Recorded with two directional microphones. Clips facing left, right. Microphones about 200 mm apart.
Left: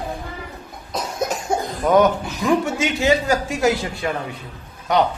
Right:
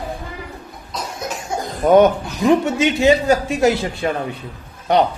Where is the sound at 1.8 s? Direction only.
25° right (ahead or behind).